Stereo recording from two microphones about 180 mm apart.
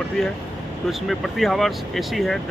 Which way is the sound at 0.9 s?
Centre (ahead or behind).